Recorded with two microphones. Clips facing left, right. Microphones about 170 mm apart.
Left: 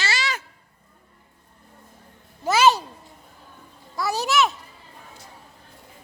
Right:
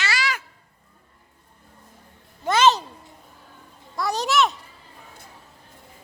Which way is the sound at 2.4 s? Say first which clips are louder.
Even; 10° left (ahead or behind).